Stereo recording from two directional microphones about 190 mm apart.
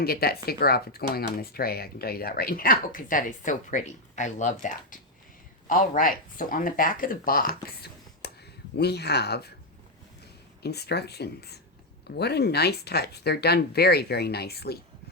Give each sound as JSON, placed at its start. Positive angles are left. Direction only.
{"t": 0.0, "sound": "speech", "side_deg": 55}
{"t": 10.6, "sound": "speech", "side_deg": 60}